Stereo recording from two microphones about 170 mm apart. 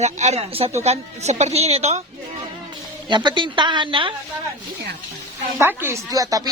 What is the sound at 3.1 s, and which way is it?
Speech, 25° right (ahead or behind).